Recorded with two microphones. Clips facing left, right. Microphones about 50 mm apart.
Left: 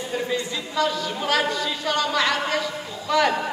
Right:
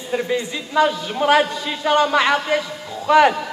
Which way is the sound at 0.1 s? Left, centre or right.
Right.